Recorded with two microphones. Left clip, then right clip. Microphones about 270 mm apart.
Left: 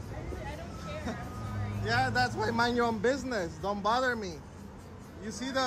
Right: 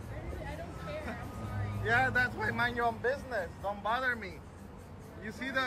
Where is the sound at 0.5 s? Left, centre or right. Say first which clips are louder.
Even; centre.